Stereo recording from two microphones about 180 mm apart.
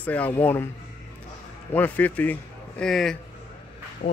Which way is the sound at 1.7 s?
10° left (ahead or behind).